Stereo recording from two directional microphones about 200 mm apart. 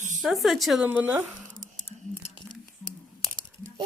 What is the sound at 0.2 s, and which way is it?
Speech, centre (ahead or behind).